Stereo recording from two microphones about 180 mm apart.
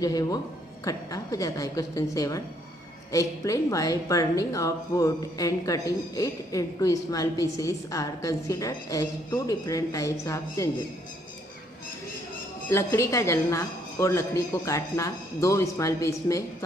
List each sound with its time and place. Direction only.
0.0 s speech: 20° left (ahead or behind)
12.6 s a woman's voice: 15° left (ahead or behind)